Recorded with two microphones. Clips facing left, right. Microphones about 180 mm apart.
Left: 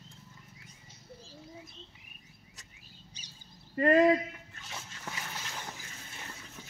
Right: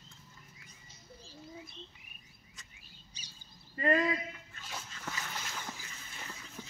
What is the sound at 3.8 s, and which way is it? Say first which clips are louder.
Speech: left 7 dB; 50° left (ahead or behind).